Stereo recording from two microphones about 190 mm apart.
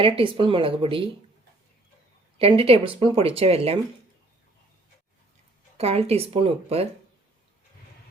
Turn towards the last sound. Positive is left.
turn(degrees=-30)  # may be behind; listen again after turning